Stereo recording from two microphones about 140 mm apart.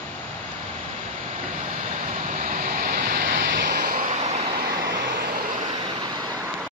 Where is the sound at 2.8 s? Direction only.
80° right.